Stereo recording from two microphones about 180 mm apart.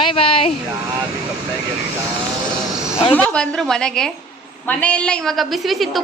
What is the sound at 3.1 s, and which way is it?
A woman's voice, 5° left (ahead or behind).